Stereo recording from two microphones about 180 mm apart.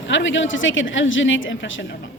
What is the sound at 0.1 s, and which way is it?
A woman's voice, 90° left.